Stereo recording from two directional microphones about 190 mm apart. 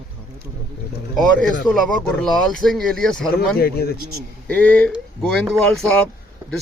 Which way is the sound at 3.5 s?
55° left (ahead or behind).